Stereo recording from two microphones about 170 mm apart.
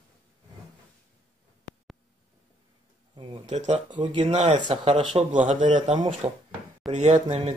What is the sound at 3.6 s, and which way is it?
Speech, 40° right (ahead or behind).